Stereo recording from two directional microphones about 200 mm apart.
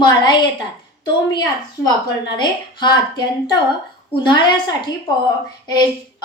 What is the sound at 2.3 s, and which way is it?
Speech, 20° left (ahead or behind).